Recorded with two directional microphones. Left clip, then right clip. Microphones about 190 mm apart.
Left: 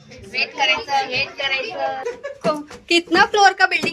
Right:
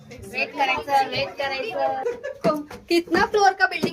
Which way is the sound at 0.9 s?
35° right (ahead or behind).